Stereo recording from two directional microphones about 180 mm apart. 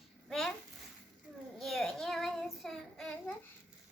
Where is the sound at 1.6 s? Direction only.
Centre (ahead or behind).